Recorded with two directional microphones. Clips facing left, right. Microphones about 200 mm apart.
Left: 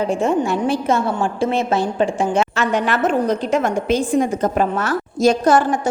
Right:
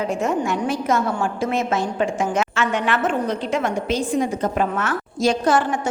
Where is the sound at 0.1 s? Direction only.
30° left (ahead or behind).